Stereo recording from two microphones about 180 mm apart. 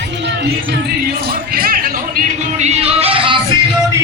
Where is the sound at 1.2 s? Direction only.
55° right (ahead or behind); by 3.3 s 30° right (ahead or behind).